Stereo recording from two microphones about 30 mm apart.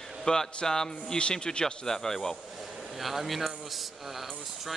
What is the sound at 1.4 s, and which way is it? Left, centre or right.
Speech, left.